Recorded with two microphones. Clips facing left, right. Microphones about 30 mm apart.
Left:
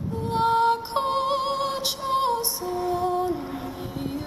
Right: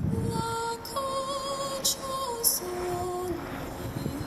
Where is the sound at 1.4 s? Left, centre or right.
Left.